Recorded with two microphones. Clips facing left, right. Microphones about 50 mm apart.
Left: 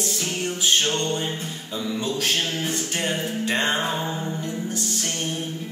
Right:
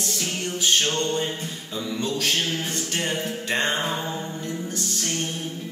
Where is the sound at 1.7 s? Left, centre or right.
Centre.